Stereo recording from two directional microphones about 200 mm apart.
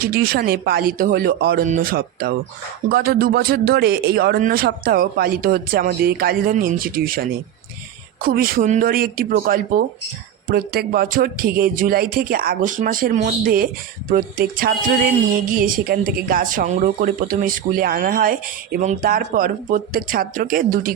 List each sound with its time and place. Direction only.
0.0 s speech: 50° right (ahead or behind)